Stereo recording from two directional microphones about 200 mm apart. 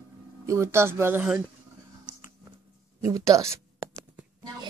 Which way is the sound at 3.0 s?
15° right (ahead or behind).